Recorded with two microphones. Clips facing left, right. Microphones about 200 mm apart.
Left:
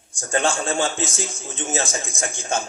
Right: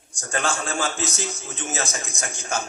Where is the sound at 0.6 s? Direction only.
25° left (ahead or behind).